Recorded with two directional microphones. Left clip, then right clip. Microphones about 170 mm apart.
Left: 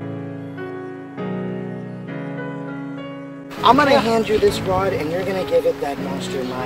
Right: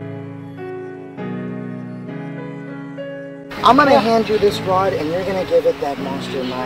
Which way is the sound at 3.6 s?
20° left (ahead or behind).